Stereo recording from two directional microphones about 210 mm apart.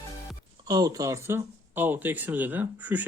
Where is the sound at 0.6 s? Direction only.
15° right (ahead or behind).